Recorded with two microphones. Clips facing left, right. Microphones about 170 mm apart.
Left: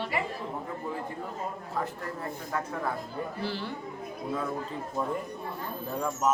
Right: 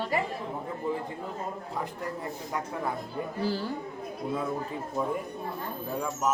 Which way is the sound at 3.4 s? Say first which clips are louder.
Right 6 dB; 40° right (ahead or behind).